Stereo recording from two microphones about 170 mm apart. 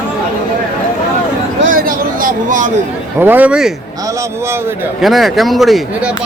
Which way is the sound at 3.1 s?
10° right (ahead or behind).